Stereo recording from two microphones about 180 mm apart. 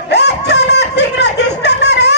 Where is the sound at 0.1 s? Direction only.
70° left (ahead or behind).